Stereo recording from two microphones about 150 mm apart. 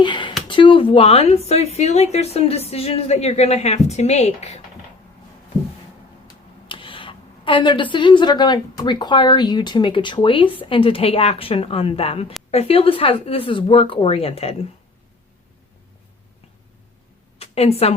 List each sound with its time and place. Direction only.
0.0 s speech: 30° left (ahead or behind); by 4.6 s 45° left (ahead or behind)
6.2 s speech: 35° left (ahead or behind)
17.4 s a woman's voice: 45° left (ahead or behind)